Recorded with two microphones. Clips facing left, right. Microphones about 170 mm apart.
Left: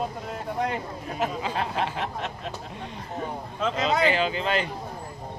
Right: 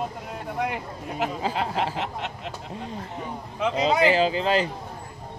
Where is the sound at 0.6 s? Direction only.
15° right (ahead or behind).